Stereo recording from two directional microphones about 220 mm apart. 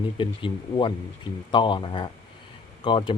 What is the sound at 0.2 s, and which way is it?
Speech, 20° left (ahead or behind).